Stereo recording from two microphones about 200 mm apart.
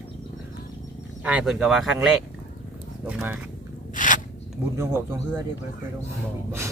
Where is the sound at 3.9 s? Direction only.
40° left (ahead or behind).